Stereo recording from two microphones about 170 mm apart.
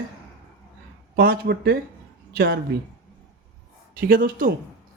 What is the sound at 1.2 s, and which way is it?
Speech, 65° right (ahead or behind).